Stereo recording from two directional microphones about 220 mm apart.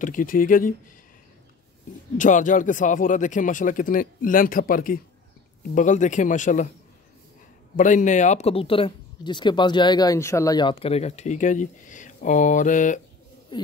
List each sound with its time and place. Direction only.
0.0 s speech: 35° left (ahead or behind)
2.1 s speech: 35° left (ahead or behind)
7.7 s speech: 35° left (ahead or behind)
13.5 s speech: 20° left (ahead or behind)